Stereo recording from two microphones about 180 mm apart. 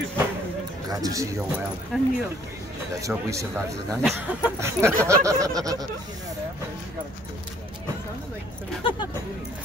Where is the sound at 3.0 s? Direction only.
15° right (ahead or behind).